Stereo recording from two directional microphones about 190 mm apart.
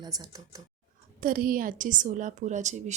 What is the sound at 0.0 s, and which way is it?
Speech, 20° right (ahead or behind).